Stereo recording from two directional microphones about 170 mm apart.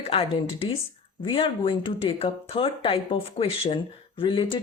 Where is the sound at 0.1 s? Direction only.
35° left (ahead or behind).